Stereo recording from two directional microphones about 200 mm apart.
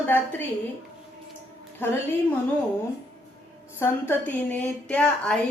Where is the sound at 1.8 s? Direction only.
10° left (ahead or behind).